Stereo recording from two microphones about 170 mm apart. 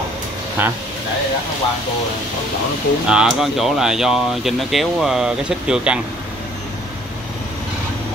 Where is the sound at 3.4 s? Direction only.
Centre (ahead or behind).